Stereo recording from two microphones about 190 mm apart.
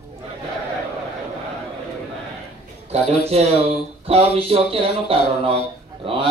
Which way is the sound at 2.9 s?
35° right (ahead or behind).